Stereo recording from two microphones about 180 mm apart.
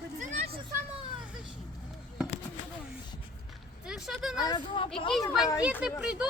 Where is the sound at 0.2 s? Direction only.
40° right (ahead or behind).